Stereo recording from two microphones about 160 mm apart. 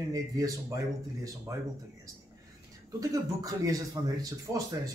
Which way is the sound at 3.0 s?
20° right (ahead or behind).